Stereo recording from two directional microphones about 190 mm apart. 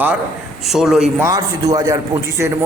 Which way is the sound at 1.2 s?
20° right (ahead or behind).